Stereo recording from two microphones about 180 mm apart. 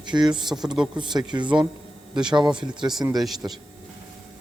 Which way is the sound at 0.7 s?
5° right (ahead or behind).